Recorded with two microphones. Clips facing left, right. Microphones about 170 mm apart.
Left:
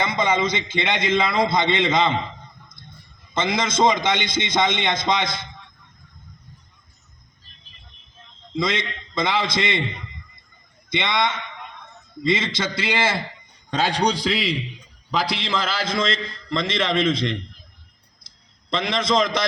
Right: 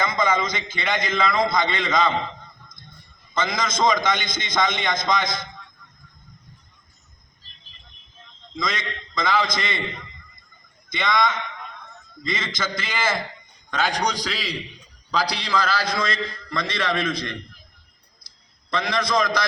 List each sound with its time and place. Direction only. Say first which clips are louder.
0.0 s a man's voice: left 1 dB; 25° left (ahead or behind)
3.3 s a man's voice: left 3 dB; 25° left (ahead or behind)
8.5 s a man's voice: left 4 dB; 25° left (ahead or behind)
10.9 s a man's voice: even; 25° left (ahead or behind)
18.7 s a man's voice: left 2 dB; 25° left (ahead or behind)